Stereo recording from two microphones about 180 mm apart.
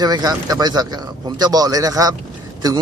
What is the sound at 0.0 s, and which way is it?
Speech, 20° right (ahead or behind).